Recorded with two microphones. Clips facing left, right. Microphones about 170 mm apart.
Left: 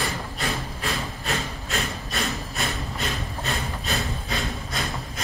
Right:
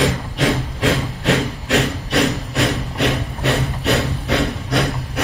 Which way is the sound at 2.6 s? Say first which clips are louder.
Right 14 dB; 70° right (ahead or behind).